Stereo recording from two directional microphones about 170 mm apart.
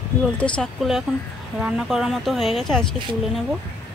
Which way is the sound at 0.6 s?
Centre (ahead or behind).